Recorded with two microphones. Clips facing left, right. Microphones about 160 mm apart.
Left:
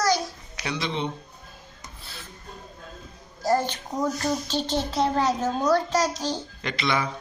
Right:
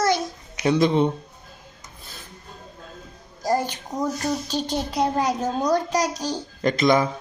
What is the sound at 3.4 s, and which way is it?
Music, 15° right (ahead or behind).